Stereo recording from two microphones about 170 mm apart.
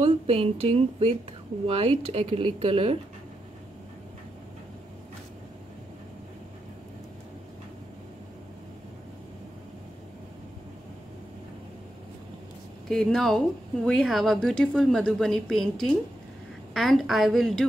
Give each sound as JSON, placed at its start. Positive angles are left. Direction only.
{"t": 0.0, "sound": "speech", "side_deg": -35}
{"t": 12.8, "sound": "a woman's voice", "side_deg": 5}